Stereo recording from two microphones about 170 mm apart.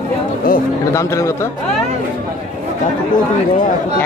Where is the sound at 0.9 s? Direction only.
15° left (ahead or behind).